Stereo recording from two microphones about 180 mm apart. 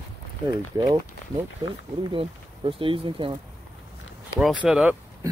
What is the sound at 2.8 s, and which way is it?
Speech, 30° right (ahead or behind).